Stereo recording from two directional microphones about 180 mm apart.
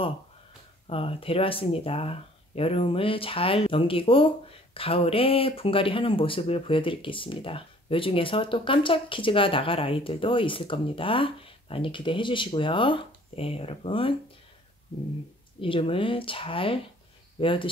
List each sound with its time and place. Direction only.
0.8 s speech: 30° left (ahead or behind)
15.6 s speech: 30° left (ahead or behind)